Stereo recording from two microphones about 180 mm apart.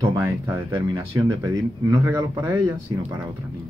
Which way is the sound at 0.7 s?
25° right (ahead or behind).